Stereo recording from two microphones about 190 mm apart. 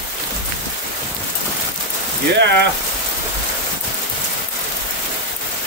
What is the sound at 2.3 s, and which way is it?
Speech, 65° right (ahead or behind).